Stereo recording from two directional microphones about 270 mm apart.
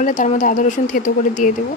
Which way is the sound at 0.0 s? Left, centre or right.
Left.